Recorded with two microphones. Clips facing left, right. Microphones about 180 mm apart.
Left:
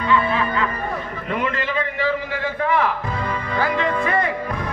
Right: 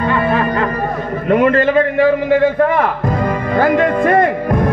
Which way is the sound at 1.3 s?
50° right (ahead or behind).